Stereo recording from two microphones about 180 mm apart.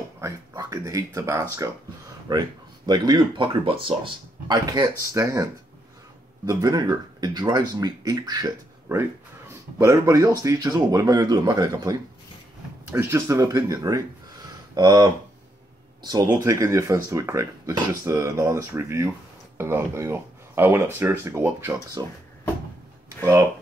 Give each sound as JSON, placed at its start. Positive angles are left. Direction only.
{"t": 0.2, "sound": "speech", "side_deg": -15}
{"t": 16.1, "sound": "speech", "side_deg": -20}